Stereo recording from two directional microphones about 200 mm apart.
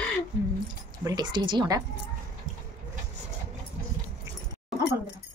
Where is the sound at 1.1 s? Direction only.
20° right (ahead or behind).